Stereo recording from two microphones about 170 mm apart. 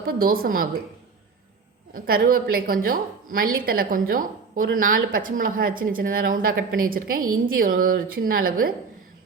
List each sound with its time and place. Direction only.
0.0 s a woman's voice: 60° right (ahead or behind)
1.9 s a woman's voice: 60° right (ahead or behind)